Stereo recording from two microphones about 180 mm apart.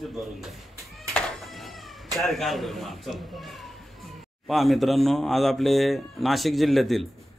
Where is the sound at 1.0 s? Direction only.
Centre (ahead or behind).